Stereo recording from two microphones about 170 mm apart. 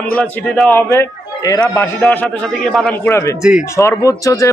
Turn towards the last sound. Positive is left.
turn(degrees=20)  # may be behind; listen again after turning